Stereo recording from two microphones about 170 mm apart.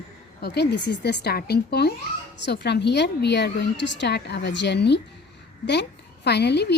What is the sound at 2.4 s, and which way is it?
A woman's voice, 85° left.